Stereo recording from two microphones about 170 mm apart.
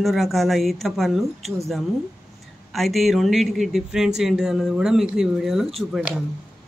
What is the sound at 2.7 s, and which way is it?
Speech, centre (ahead or behind).